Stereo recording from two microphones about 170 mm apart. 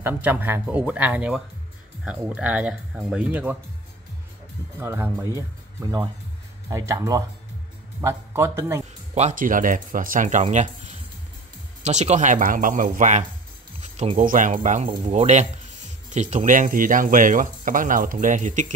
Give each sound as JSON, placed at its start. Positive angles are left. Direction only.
{"t": 0.0, "sound": "speech", "side_deg": -10}
{"t": 4.7, "sound": "speech", "side_deg": -15}
{"t": 9.1, "sound": "speech", "side_deg": -45}
{"t": 14.9, "sound": "speech", "side_deg": -35}